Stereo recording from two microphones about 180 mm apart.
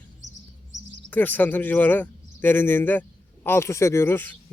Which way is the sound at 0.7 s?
85° right.